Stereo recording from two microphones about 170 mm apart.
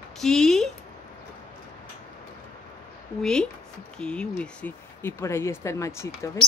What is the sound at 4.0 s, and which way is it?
Speech, 5° left (ahead or behind).